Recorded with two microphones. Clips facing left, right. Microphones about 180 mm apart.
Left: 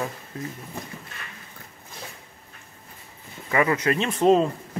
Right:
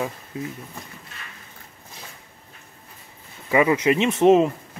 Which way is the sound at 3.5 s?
10° right (ahead or behind).